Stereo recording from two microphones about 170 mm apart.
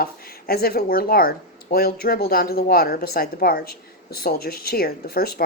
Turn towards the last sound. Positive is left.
turn(degrees=65)  # may be behind; listen again after turning